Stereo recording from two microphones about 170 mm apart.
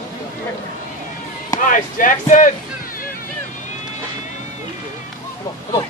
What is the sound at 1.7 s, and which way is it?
Speech, 50° left (ahead or behind).